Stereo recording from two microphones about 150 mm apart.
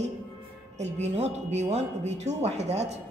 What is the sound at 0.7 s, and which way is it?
Speech, 50° right (ahead or behind).